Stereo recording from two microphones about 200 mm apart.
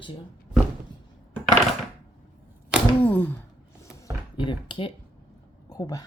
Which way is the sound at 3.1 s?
10° left (ahead or behind).